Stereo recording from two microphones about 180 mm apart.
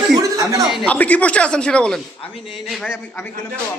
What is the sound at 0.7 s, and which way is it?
Speech, 5° left (ahead or behind).